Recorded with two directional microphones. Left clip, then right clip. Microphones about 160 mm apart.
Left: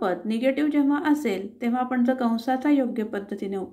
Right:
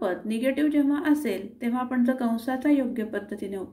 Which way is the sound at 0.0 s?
20° left (ahead or behind).